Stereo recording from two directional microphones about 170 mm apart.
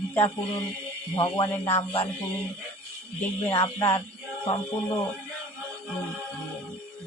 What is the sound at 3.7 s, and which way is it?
Music, 15° left (ahead or behind).